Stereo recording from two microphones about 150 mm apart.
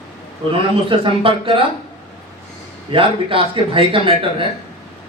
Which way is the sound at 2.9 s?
35° right (ahead or behind).